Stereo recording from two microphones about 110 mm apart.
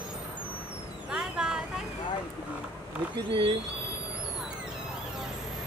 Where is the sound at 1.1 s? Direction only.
5° right (ahead or behind).